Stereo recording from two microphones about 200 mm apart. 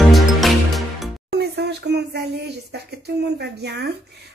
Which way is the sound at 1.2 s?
55° right (ahead or behind).